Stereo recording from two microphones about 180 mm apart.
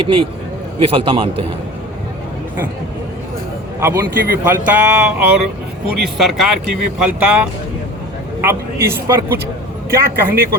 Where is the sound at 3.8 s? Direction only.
10° right (ahead or behind).